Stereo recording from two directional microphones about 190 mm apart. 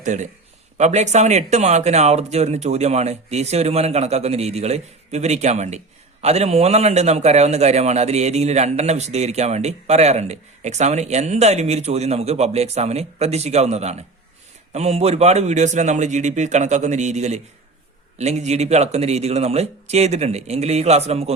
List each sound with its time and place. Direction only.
0.0 s a man's voice: 40° right (ahead or behind)